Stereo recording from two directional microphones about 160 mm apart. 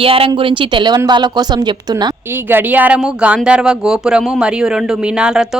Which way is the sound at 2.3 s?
10° right (ahead or behind).